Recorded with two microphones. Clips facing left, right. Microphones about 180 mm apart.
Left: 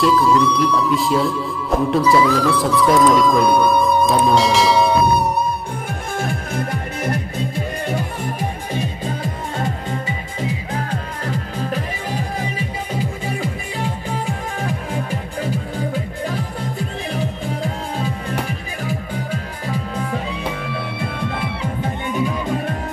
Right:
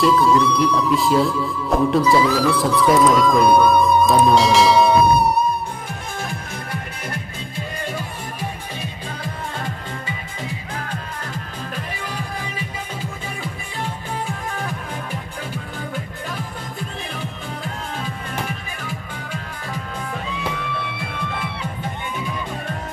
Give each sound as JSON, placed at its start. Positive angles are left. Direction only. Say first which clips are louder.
{"t": 0.0, "sound": "speech", "louder": "left 1 dB", "side_deg": 0}
{"t": 3.8, "sound": "bell", "louder": "right 1 dB", "side_deg": 0}
{"t": 6.1, "sound": "music", "louder": "left 8 dB", "side_deg": 55}